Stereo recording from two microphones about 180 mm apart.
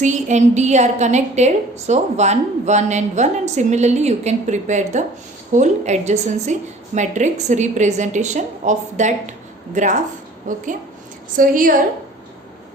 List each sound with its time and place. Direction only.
0.0 s a woman's voice: 40° right (ahead or behind)